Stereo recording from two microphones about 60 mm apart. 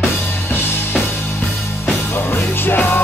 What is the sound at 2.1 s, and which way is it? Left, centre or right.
Music, left.